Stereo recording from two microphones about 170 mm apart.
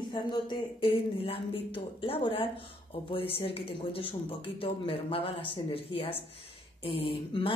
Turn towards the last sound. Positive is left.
turn(degrees=30)  # may be behind; listen again after turning